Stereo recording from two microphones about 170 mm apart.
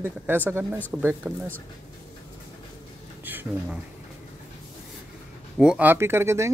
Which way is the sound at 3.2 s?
10° right (ahead or behind).